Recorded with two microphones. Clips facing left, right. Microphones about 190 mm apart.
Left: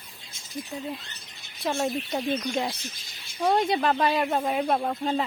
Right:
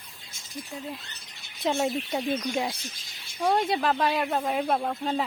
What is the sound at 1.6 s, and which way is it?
Speech, 20° right (ahead or behind).